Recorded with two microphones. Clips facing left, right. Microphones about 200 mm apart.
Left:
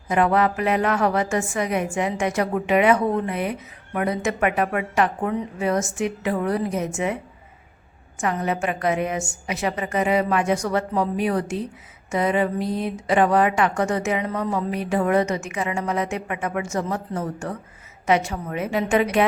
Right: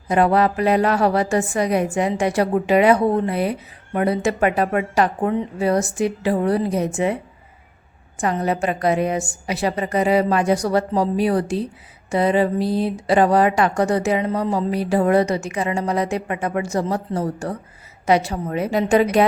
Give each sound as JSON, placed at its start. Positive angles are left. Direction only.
{"t": 0.1, "sound": "a woman's voice", "side_deg": -35}
{"t": 8.2, "sound": "a woman's voice", "side_deg": -35}